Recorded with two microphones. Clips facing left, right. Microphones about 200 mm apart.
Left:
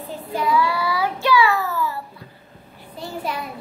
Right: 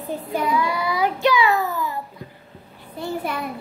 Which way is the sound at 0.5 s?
20° right (ahead or behind).